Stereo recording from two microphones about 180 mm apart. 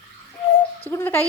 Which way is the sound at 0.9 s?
10° left (ahead or behind).